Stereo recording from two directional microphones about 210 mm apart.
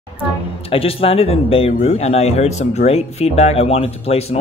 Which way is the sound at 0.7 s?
25° left (ahead or behind).